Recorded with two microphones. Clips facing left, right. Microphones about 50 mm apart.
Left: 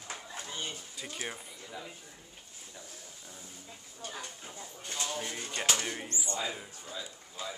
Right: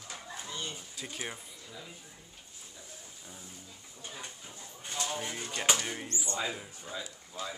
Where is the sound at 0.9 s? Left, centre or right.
Centre.